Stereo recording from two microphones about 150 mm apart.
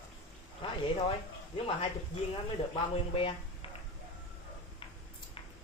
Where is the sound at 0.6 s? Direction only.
35° left (ahead or behind).